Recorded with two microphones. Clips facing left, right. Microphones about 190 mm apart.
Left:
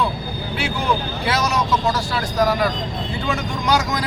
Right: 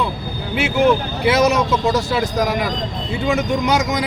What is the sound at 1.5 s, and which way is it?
Speech, 20° right (ahead or behind).